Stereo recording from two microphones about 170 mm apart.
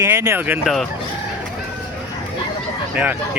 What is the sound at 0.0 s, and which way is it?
Speech, 15° right (ahead or behind).